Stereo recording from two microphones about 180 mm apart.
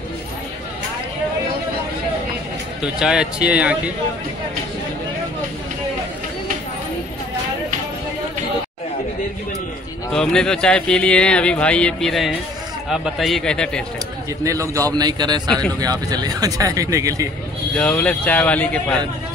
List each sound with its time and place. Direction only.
2.8 s speech: 5° right (ahead or behind)
10.1 s speech: 5° left (ahead or behind)
14.4 s a man's voice: 15° right (ahead or behind)
17.7 s speech: 5° left (ahead or behind)